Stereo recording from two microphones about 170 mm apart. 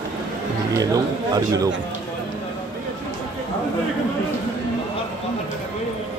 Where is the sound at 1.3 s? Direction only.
20° right (ahead or behind).